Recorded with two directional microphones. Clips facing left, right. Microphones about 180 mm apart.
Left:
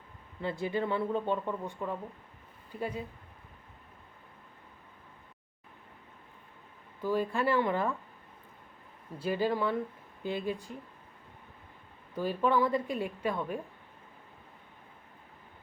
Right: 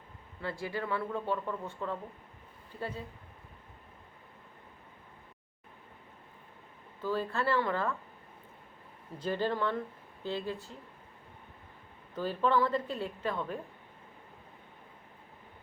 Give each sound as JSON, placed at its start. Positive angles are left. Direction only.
{"t": 0.4, "sound": "speech", "side_deg": 20}
{"t": 7.0, "sound": "a woman's voice", "side_deg": 15}
{"t": 9.1, "sound": "a woman's voice", "side_deg": 10}
{"t": 12.1, "sound": "a woman's voice", "side_deg": 10}